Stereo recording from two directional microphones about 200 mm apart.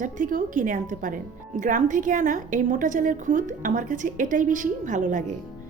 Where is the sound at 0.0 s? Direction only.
40° right (ahead or behind).